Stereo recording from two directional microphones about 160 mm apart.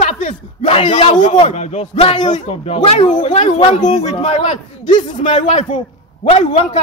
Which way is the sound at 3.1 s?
50° left (ahead or behind).